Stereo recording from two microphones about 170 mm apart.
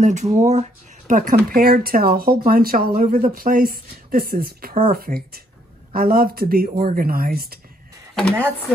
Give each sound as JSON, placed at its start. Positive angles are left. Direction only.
{"t": 0.0, "sound": "speech", "side_deg": -45}